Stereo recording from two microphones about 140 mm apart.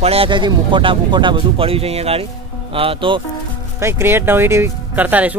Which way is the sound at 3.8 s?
20° right (ahead or behind).